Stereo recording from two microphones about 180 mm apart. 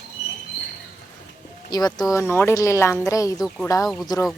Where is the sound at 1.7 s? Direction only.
20° left (ahead or behind).